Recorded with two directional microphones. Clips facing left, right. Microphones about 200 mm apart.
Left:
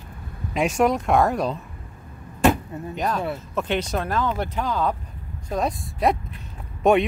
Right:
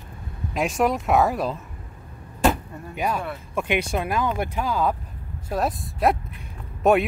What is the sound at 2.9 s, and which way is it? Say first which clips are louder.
Speech: left 1 dB; 10° right (ahead or behind).